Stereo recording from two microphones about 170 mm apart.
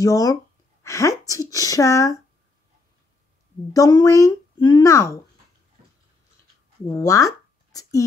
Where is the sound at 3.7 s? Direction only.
20° left (ahead or behind).